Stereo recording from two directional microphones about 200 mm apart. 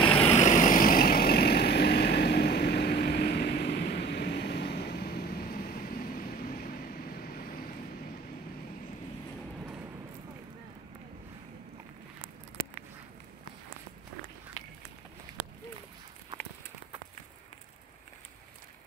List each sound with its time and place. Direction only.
0.0 s vehicle: 30° left (ahead or behind); by 7.6 s 45° left (ahead or behind)